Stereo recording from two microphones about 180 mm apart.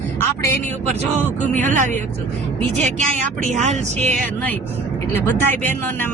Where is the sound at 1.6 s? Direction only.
45° right (ahead or behind).